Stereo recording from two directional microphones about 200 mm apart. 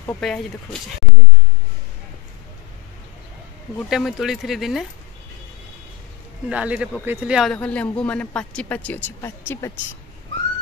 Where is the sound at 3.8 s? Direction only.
Centre (ahead or behind).